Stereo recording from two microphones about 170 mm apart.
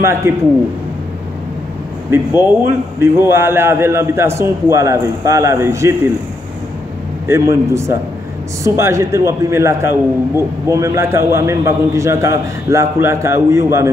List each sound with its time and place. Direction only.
0.0 s a man's voice: 15° right (ahead or behind)
2.1 s a man's voice: 15° right (ahead or behind)
7.2 s a man's voice: 15° right (ahead or behind)